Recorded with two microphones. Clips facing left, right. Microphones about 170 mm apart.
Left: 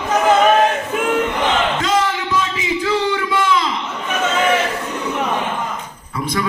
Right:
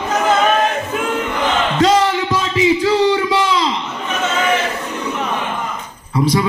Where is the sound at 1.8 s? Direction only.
35° right (ahead or behind).